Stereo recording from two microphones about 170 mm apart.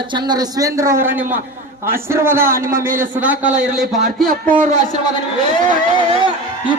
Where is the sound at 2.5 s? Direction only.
55° right (ahead or behind).